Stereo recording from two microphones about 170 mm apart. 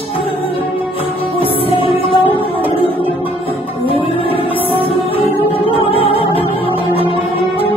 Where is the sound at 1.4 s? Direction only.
30° left (ahead or behind).